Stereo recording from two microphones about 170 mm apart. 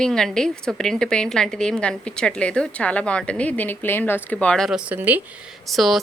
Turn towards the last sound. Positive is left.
turn(degrees=0)  # may be behind; listen again after turning